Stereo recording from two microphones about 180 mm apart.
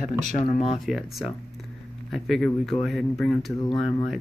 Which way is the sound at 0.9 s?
Centre (ahead or behind).